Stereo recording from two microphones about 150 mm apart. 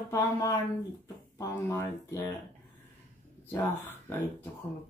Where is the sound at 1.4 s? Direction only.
15° left (ahead or behind).